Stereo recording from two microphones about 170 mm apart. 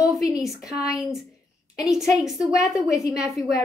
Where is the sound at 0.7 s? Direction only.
Centre (ahead or behind).